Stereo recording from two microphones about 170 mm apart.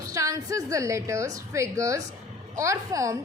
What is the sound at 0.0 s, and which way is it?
A woman's voice, 20° right (ahead or behind).